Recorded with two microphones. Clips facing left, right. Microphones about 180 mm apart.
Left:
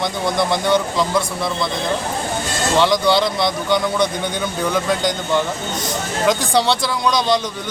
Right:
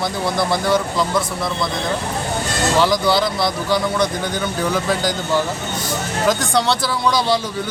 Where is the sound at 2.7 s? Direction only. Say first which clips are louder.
Left 2 dB; centre (ahead or behind).